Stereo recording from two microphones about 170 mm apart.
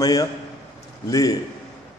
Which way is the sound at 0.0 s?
20° left (ahead or behind).